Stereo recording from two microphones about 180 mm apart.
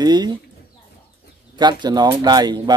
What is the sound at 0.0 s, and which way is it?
Speech, 20° right (ahead or behind).